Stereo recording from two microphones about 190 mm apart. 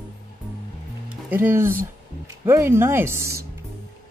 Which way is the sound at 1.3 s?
10° right (ahead or behind).